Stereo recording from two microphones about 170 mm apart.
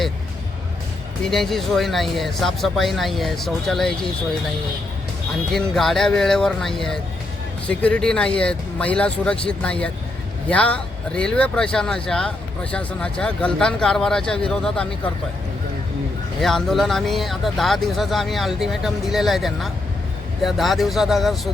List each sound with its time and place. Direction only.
1.2 s speech: centre (ahead or behind)
5.5 s speech: centre (ahead or behind)
16.4 s speech: centre (ahead or behind)